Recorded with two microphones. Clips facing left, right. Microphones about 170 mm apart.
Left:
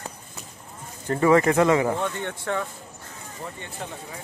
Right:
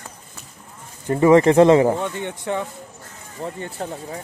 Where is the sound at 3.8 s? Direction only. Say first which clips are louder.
Right 6 dB; 40° right (ahead or behind).